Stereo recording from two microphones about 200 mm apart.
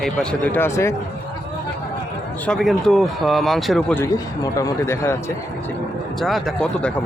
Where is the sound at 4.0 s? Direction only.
15° left (ahead or behind).